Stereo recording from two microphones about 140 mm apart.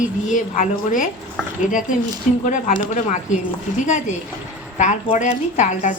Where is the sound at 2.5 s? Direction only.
65° left (ahead or behind).